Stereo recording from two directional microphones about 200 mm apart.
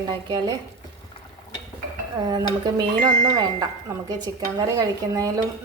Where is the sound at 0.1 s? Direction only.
20° right (ahead or behind).